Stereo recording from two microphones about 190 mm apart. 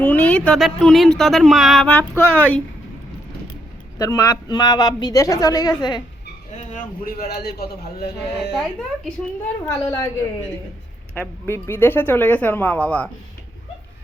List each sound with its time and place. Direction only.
0.0 s speech: 10° left (ahead or behind)
3.9 s a woman's voice: 20° left (ahead or behind)
6.5 s a man's voice: 40° left (ahead or behind)
9.6 s speech: 15° left (ahead or behind)
11.1 s speech: 10° left (ahead or behind)